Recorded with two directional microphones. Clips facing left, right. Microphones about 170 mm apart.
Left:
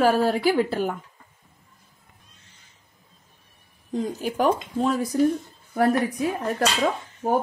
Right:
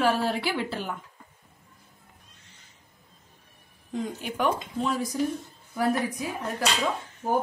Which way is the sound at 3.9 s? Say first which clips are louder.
Left 5 dB; 35° left (ahead or behind).